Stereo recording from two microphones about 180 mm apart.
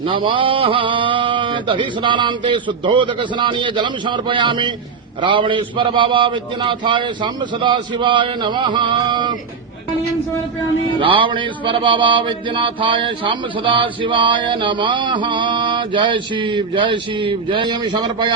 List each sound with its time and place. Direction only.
0.0 s mantra: 30° right (ahead or behind)
11.0 s mantra: 30° right (ahead or behind)